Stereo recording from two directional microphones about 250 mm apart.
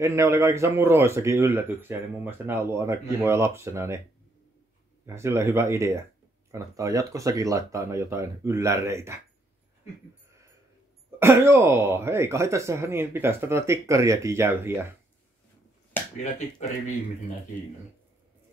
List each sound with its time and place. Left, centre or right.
0.0 s a man's voice: centre
5.0 s a man's voice: centre
11.1 s a man's voice: centre
16.2 s speech: left